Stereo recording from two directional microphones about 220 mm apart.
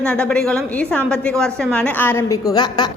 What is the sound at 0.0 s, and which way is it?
A woman's voice, 5° left (ahead or behind).